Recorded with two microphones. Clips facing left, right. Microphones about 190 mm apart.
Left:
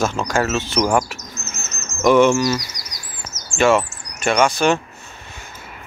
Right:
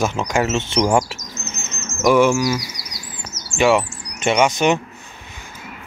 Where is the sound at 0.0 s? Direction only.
20° right (ahead or behind).